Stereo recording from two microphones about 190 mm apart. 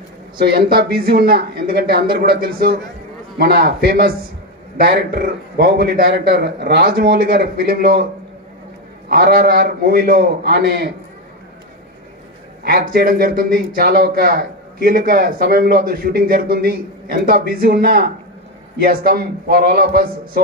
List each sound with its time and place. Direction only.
0.4 s a man's voice: 55° right (ahead or behind)
9.1 s speech: 50° right (ahead or behind)
12.6 s speech: 50° right (ahead or behind)